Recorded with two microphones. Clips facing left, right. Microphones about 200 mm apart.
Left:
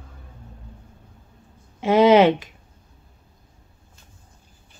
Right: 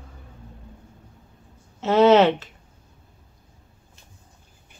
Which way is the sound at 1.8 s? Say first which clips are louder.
Left 1 dB; 15° left (ahead or behind).